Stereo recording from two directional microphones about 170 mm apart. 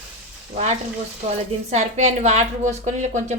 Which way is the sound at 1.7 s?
40° right (ahead or behind).